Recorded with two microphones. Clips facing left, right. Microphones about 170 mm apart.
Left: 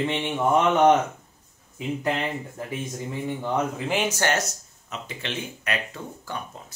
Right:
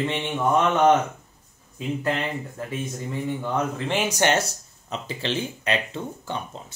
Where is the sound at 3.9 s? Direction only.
10° right (ahead or behind).